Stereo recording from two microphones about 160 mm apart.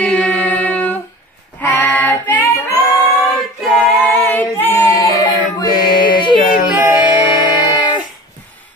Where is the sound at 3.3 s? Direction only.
Centre (ahead or behind); by 5.7 s 25° left (ahead or behind).